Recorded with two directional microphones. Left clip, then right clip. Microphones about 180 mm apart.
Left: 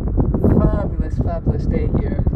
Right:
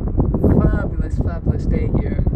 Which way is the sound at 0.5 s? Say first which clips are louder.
Left 1 dB; 10° left (ahead or behind).